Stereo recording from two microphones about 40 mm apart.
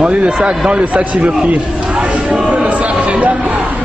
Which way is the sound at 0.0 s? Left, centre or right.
Right.